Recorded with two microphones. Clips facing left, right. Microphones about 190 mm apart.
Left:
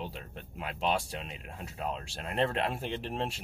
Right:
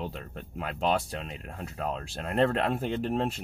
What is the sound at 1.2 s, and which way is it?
Speech, centre (ahead or behind).